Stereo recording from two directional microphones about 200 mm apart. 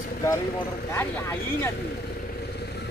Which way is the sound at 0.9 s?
10° left (ahead or behind).